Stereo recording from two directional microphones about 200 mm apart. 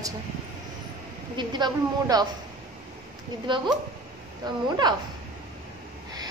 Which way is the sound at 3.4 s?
25° right (ahead or behind).